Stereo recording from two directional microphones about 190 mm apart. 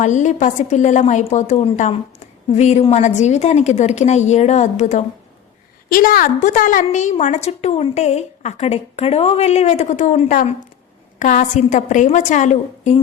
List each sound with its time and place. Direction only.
0.0 s a woman's voice: 40° left (ahead or behind)
5.9 s a woman's voice: 50° left (ahead or behind)